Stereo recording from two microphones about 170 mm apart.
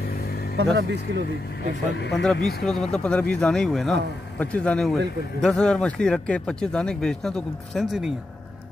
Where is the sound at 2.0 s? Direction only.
90° left.